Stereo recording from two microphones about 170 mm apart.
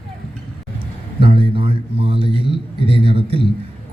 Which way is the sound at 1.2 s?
30° right (ahead or behind).